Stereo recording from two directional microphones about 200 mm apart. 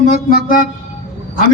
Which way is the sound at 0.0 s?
45° left (ahead or behind).